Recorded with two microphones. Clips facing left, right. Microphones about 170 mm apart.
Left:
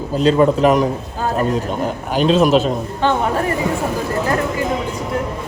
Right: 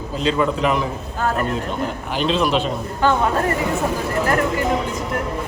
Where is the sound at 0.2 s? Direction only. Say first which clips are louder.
Left 6 dB; 40° left (ahead or behind).